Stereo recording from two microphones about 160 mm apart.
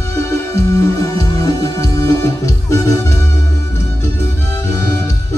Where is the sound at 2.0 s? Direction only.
20° left (ahead or behind).